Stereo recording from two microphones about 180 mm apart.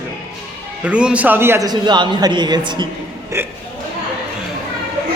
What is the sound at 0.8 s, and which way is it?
A man's voice, 5° right (ahead or behind).